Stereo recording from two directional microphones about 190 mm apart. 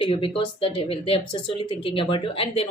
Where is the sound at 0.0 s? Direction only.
25° left (ahead or behind).